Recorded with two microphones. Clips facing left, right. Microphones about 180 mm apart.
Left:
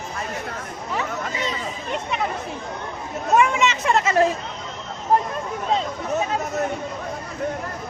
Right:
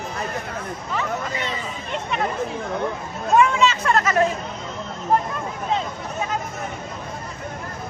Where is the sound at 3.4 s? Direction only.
20° left (ahead or behind).